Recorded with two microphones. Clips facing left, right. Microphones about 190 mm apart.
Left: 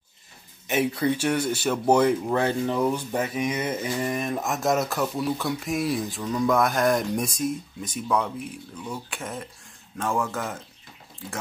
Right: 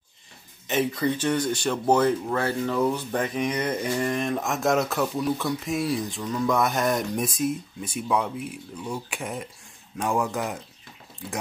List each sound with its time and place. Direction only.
0.7 s speech: 10° left (ahead or behind); by 10.6 s 15° right (ahead or behind)